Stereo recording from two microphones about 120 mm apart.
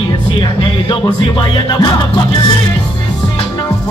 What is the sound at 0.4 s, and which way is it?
Music, 45° left (ahead or behind).